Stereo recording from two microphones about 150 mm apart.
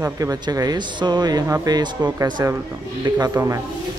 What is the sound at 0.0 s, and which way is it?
A man's voice, 25° right (ahead or behind).